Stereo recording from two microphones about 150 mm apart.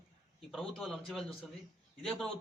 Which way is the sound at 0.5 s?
Centre (ahead or behind).